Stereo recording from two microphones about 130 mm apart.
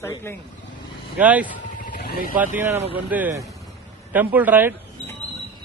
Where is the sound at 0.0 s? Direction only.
20° left (ahead or behind).